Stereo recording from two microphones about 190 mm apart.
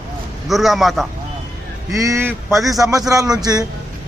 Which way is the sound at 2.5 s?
Centre (ahead or behind).